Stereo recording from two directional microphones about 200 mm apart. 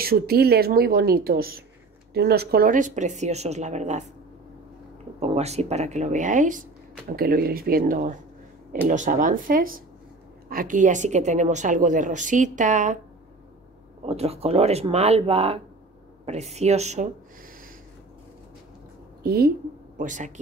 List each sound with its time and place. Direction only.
0.0 s a woman's voice: 50° right (ahead or behind)
5.2 s a woman's voice: 30° right (ahead or behind)
14.0 s a woman's voice: 30° right (ahead or behind)
19.2 s a woman's voice: 50° right (ahead or behind)
20.0 s a woman's voice: 40° right (ahead or behind)